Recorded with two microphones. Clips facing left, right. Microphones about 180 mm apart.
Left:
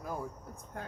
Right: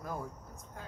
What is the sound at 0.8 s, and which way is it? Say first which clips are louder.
Speech: left 5 dB; 60° left (ahead or behind).